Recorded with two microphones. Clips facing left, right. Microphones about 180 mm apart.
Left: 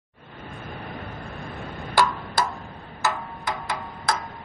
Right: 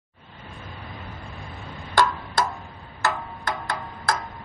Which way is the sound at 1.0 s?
60° left (ahead or behind).